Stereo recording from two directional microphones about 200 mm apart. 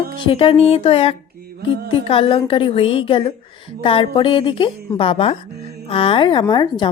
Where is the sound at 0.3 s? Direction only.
30° left (ahead or behind).